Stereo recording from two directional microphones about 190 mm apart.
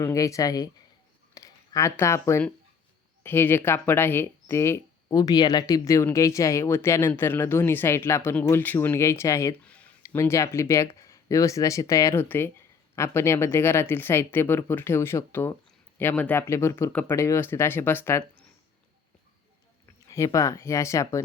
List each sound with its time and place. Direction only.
0.0 s speech: 15° left (ahead or behind)
20.1 s speech: 15° left (ahead or behind)